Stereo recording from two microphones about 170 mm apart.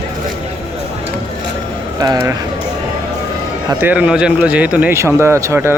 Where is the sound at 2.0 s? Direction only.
20° right (ahead or behind).